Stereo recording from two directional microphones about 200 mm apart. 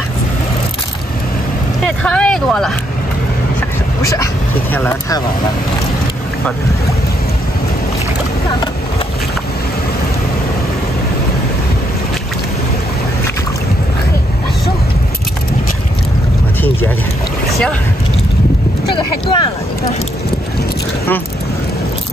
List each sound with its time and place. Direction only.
2.0 s speech: 5° left (ahead or behind)
4.0 s speech: 15° left (ahead or behind)
17.5 s boat: centre (ahead or behind)
18.9 s speech: 25° left (ahead or behind)